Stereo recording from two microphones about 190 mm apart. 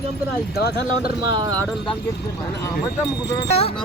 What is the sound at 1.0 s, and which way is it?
Speech, 20° right (ahead or behind).